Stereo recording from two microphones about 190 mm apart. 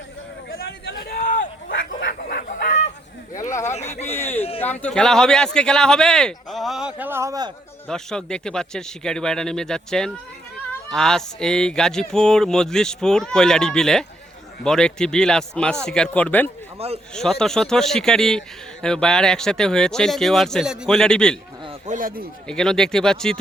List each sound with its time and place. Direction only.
1.1 s a sound: 45° left (ahead or behind)
2.1 s chicken: 50° left (ahead or behind)
3.6 s a sound: 35° left (ahead or behind)
4.0 s a sound: 10° left (ahead or behind)
4.6 s a man's voice: 10° left (ahead or behind); by 7.5 s 20° right (ahead or behind)
7.9 s a man's voice: 5° left (ahead or behind)
16.7 s a man's voice: 30° right (ahead or behind)
17.2 s a man's voice: 5° left (ahead or behind)
21.7 s speech: 40° right (ahead or behind)
22.4 s a man's voice: 5° left (ahead or behind)